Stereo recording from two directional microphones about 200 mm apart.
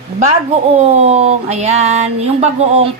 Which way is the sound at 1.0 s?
30° right (ahead or behind).